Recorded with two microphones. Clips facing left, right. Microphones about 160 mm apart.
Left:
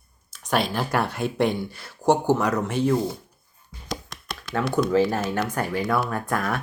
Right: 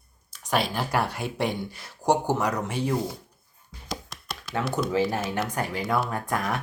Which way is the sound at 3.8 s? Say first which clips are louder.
Left 2 dB; 5° right (ahead or behind).